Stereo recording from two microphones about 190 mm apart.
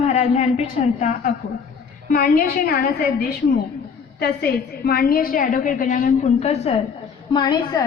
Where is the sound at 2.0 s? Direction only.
50° left (ahead or behind).